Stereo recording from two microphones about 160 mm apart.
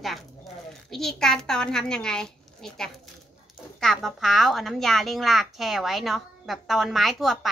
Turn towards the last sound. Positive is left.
turn(degrees=0)  # may be behind; listen again after turning